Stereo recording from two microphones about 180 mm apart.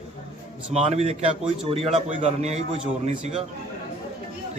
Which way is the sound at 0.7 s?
35° right (ahead or behind).